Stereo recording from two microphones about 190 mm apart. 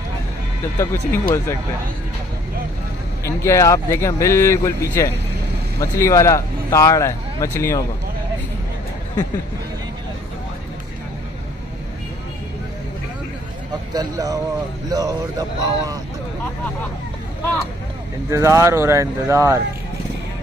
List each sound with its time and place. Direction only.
0.7 s speech: 15° left (ahead or behind)
3.3 s speech: 15° left (ahead or behind)
13.9 s speech: 20° right (ahead or behind)
18.3 s speech: 15° right (ahead or behind)